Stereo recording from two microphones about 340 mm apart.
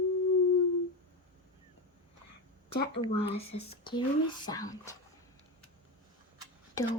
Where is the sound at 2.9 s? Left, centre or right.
Centre.